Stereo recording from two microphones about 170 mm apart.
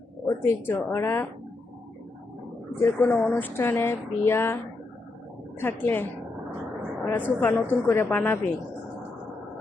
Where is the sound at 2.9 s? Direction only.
5° left (ahead or behind).